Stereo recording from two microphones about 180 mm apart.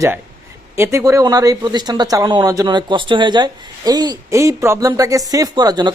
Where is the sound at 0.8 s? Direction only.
15° right (ahead or behind).